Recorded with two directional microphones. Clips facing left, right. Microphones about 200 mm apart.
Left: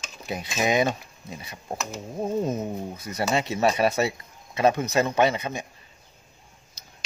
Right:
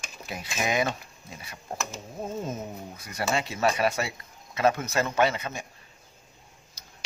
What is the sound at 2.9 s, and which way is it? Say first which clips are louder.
Speech: left 2 dB; 20° left (ahead or behind).